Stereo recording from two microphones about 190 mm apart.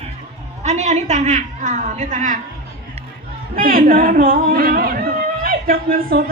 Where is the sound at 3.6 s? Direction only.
50° right (ahead or behind).